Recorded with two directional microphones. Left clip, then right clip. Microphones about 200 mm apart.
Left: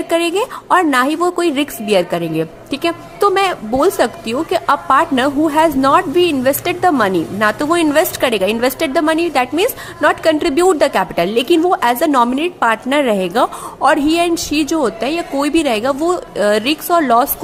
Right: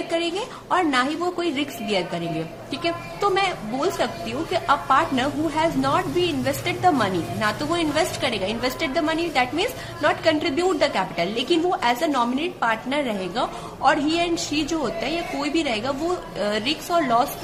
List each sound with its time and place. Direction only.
0.1 s a woman's voice: 55° left (ahead or behind)